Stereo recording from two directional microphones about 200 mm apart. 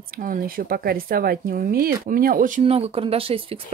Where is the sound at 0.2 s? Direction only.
45° right (ahead or behind).